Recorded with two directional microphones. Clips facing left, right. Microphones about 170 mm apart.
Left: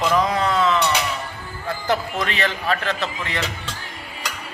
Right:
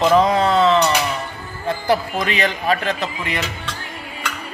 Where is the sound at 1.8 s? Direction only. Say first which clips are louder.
Right 3 dB; 15° right (ahead or behind).